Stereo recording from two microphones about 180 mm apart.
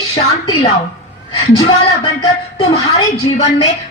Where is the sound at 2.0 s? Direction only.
25° left (ahead or behind).